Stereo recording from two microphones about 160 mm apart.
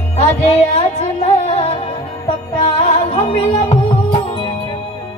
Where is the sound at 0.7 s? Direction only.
40° left (ahead or behind).